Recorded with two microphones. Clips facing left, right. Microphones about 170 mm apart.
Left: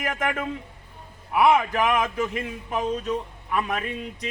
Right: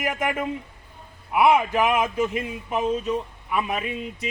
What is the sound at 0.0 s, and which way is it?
Speech, 10° right (ahead or behind).